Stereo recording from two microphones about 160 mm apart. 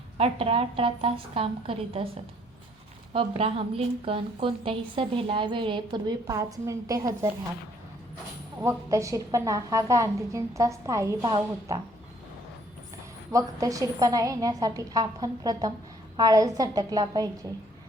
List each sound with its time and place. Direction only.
0.2 s a woman's voice: 35° right (ahead or behind)
3.1 s a woman's voice: 35° right (ahead or behind); by 7.3 s 20° right (ahead or behind)
8.6 s a woman's voice: 20° right (ahead or behind)
13.3 s a woman's voice: 20° right (ahead or behind)